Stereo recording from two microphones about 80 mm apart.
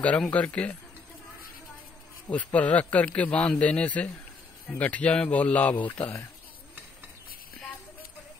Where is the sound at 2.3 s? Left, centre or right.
Centre.